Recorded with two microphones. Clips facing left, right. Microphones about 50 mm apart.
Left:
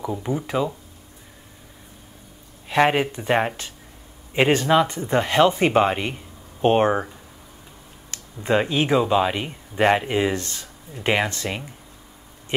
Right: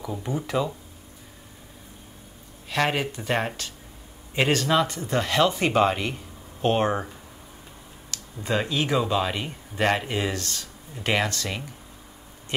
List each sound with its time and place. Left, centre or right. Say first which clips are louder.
0.0 s speech: left 4 dB; centre
2.7 s speech: left 6 dB; left
8.1 s a sound: even; left
8.5 s speech: left 5 dB; left
9.0 s speech: left 5 dB; centre